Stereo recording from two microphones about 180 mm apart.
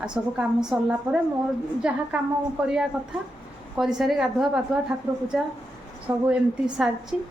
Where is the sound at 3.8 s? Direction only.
Centre (ahead or behind).